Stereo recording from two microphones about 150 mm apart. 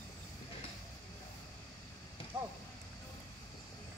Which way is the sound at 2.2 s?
40° left (ahead or behind).